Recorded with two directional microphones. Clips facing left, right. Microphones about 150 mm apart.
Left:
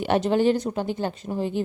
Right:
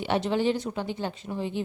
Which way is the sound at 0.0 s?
50° left (ahead or behind).